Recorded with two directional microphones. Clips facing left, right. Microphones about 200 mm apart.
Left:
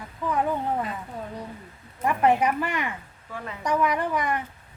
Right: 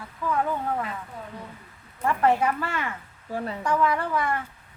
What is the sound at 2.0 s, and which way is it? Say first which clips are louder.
Speech: left 1 dB; 15° left (ahead or behind).